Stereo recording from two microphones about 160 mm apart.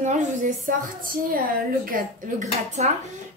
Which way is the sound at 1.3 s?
60° right (ahead or behind).